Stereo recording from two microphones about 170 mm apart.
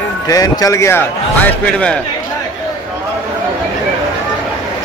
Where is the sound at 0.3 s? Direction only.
20° left (ahead or behind).